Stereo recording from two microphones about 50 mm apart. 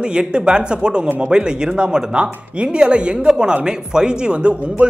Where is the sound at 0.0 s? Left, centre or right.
Centre.